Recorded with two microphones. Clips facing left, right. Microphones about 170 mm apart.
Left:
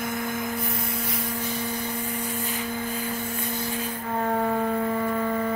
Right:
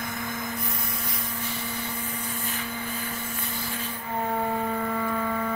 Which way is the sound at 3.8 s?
40° left (ahead or behind).